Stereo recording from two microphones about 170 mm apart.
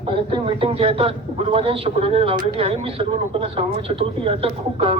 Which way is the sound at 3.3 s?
35° right (ahead or behind).